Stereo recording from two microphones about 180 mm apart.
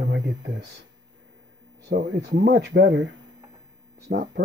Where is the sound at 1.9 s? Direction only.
65° right (ahead or behind); by 3.1 s 85° right.